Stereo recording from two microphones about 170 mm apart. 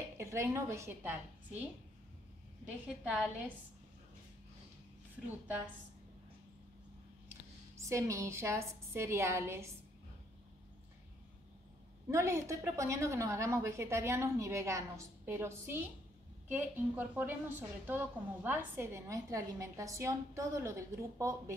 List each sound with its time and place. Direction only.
0.2 s a woman's voice: 15° right (ahead or behind)
3.0 s a woman's voice: 5° right (ahead or behind)
7.7 s a woman's voice: 15° right (ahead or behind)
12.1 s a woman's voice: 15° right (ahead or behind)